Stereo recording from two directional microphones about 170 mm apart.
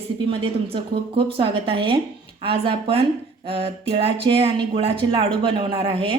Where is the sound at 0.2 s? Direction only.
30° right (ahead or behind).